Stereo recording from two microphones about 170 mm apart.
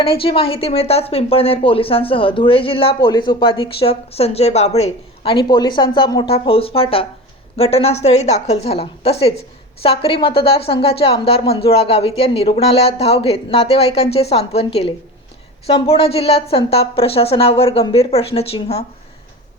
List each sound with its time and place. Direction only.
0.0 s a woman's voice: 30° left (ahead or behind)